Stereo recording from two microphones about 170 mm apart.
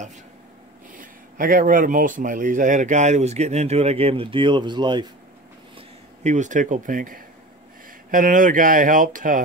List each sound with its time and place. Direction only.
0.9 s speech: 55° right (ahead or behind); by 5.0 s 25° right (ahead or behind)
5.8 s speech: 45° right (ahead or behind)